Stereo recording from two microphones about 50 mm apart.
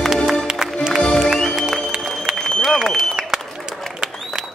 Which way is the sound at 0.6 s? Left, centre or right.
Centre.